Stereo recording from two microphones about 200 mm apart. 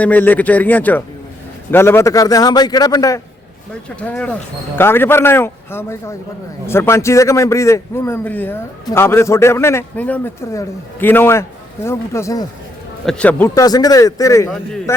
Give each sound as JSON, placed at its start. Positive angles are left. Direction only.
{"t": 0.0, "sound": "a man's voice", "side_deg": 10}
{"t": 3.8, "sound": "a man's voice", "side_deg": 5}
{"t": 13.5, "sound": "a man's voice", "side_deg": 20}
{"t": 14.5, "sound": "a man's voice", "side_deg": 5}